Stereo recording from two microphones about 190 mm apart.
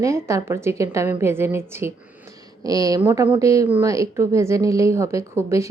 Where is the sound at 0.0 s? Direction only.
15° right (ahead or behind).